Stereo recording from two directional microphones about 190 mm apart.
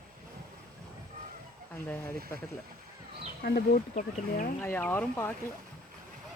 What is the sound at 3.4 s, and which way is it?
Speech, 45° left (ahead or behind).